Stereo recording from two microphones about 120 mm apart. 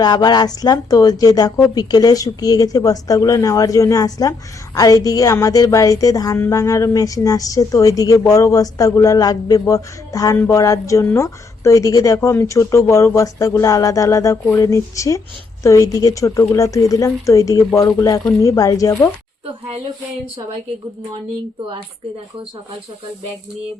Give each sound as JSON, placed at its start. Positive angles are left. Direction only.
{"t": 0.0, "sound": "speech", "side_deg": 35}
{"t": 10.3, "sound": "music", "side_deg": 15}
{"t": 10.6, "sound": "speech", "side_deg": 25}